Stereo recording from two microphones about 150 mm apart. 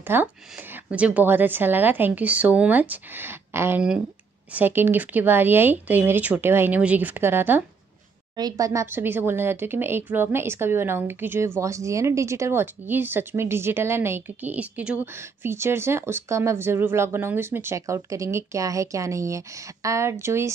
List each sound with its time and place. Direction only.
0.0 s speech: 15° right (ahead or behind)
8.4 s speech: 25° right (ahead or behind)